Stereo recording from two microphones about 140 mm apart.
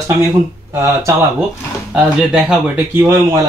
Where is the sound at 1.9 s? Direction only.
10° right (ahead or behind).